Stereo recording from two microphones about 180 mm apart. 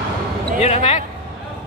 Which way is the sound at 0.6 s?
35° left (ahead or behind).